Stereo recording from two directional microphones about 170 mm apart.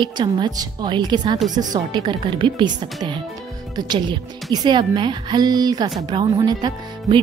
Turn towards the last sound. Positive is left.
turn(degrees=-25)  # may be behind; listen again after turning